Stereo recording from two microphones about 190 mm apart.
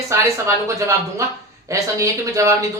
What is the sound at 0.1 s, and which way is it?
A man's voice, 15° right (ahead or behind).